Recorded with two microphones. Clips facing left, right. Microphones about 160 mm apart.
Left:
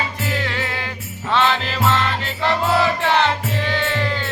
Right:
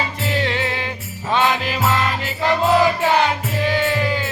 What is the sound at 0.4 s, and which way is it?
Music, 20° right (ahead or behind).